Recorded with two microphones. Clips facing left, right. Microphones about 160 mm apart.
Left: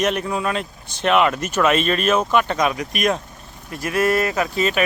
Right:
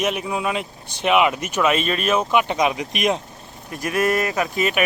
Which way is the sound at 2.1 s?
10° right (ahead or behind).